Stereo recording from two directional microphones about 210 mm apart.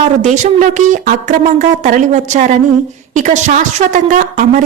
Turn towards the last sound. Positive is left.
turn(degrees=-40)  # may be behind; listen again after turning